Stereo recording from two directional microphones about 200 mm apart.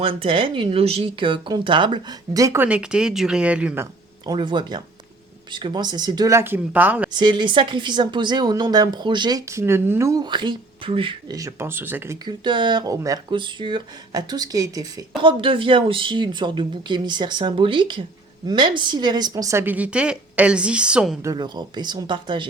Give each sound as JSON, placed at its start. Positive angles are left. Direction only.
{"t": 0.0, "sound": "speech", "side_deg": -25}
{"t": 4.3, "sound": "speech", "side_deg": -25}
{"t": 7.1, "sound": "speech", "side_deg": -20}
{"t": 12.2, "sound": "a woman's voice", "side_deg": -25}
{"t": 21.2, "sound": "speech", "side_deg": -20}